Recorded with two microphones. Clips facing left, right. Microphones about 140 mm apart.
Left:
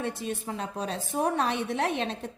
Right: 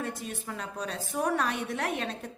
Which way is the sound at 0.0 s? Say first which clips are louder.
Left 4 dB; 30° left (ahead or behind).